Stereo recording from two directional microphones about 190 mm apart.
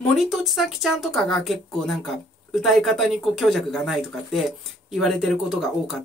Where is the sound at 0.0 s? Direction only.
Centre (ahead or behind).